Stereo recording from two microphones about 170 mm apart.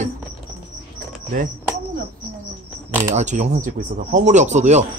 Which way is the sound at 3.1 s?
45° right (ahead or behind).